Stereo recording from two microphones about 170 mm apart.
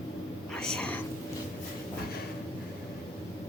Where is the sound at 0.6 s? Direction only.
5° left (ahead or behind).